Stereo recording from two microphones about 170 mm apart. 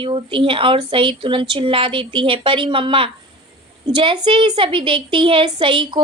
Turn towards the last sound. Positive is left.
turn(degrees=-30)  # may be behind; listen again after turning